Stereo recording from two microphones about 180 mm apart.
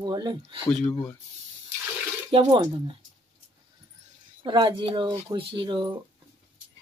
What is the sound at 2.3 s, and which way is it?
Speech, 25° right (ahead or behind).